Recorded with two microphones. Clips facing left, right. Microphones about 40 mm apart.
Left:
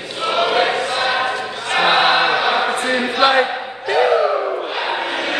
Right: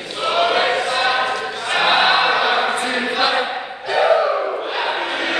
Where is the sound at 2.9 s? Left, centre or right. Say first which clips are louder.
Left 2 dB; centre.